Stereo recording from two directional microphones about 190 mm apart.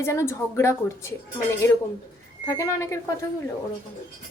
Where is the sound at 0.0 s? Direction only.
15° left (ahead or behind).